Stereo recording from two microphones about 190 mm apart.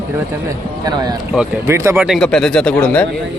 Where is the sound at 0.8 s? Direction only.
20° right (ahead or behind).